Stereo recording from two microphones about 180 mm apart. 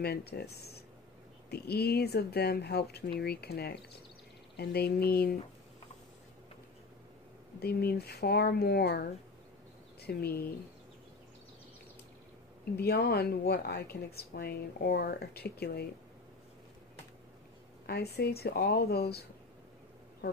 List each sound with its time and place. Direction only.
0.0 s speech: 60° left (ahead or behind)
7.6 s speech: 60° left (ahead or behind)
12.7 s speech: 60° left (ahead or behind)
17.8 s speech: 60° left (ahead or behind)